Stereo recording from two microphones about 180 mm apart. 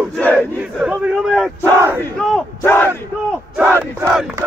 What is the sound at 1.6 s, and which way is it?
Battle cry, 15° right (ahead or behind).